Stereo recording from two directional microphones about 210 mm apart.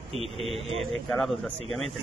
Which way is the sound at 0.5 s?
30° right (ahead or behind).